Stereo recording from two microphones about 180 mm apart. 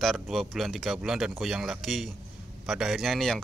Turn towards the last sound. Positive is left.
turn(degrees=0)  # may be behind; listen again after turning